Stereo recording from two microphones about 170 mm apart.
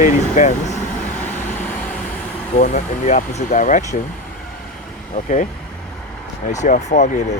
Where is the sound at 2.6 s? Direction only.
45° left (ahead or behind).